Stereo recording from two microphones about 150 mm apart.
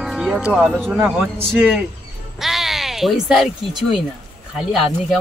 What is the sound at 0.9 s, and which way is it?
Speech, 15° right (ahead or behind).